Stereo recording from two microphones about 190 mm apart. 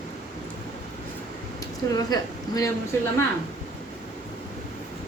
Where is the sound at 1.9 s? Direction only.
20° left (ahead or behind).